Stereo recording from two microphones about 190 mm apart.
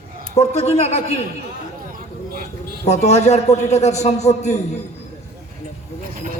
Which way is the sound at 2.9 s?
35° left (ahead or behind).